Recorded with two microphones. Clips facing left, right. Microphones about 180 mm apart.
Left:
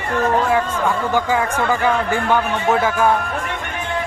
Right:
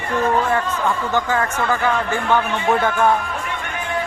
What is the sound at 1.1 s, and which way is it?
A woman's voice, 10° left (ahead or behind).